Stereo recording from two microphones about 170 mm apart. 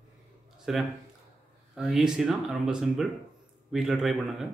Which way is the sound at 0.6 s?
Centre (ahead or behind).